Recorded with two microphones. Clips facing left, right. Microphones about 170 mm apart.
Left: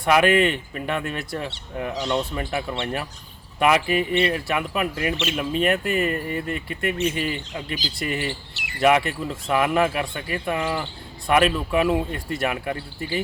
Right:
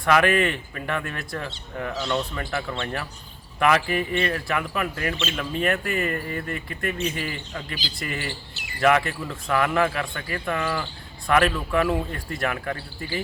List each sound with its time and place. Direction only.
0.0 s speech: 20° left (ahead or behind)
8.8 s speech: 15° left (ahead or behind)